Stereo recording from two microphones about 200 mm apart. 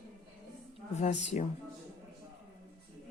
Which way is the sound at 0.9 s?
35° left (ahead or behind).